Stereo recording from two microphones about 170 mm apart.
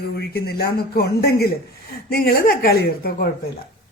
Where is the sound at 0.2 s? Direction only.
70° left (ahead or behind).